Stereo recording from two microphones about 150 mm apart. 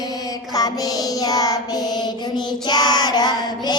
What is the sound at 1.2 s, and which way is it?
Child singing, 25° left (ahead or behind).